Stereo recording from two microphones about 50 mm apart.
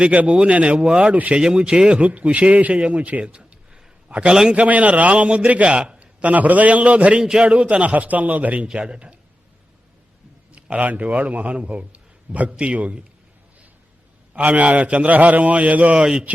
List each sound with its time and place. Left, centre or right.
0.0 s a man's voice: right
1.1 s a man's voice: right
1.4 s speech: centre
2.0 s a man's voice: right
4.1 s speech: centre
4.5 s a man's voice: right
8.6 s a man's voice: centre
10.5 s a man's voice: right
14.3 s a man's voice: right
16.0 s speech: centre